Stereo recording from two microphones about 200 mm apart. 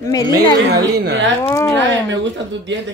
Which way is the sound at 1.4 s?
15° left (ahead or behind).